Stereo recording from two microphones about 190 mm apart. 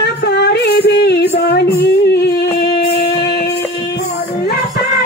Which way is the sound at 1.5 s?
55° left (ahead or behind).